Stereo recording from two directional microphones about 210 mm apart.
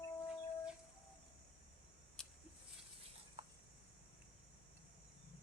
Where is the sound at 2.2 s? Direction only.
5° left (ahead or behind).